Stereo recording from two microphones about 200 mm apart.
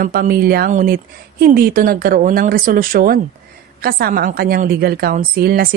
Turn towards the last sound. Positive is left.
turn(degrees=-50)  # may be behind; listen again after turning